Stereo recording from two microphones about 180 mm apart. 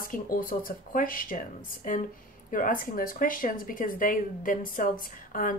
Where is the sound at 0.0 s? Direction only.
50° left (ahead or behind).